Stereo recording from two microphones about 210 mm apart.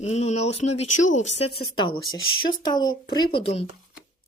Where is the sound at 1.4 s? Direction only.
90° left.